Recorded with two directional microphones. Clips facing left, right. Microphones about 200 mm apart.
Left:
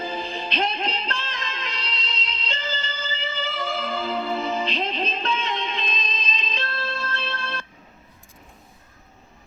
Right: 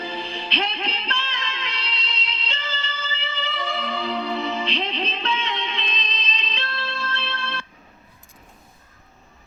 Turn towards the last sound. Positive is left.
turn(degrees=45)  # may be behind; listen again after turning